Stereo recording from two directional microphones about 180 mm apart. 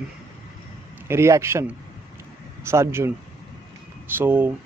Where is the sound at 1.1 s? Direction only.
15° right (ahead or behind).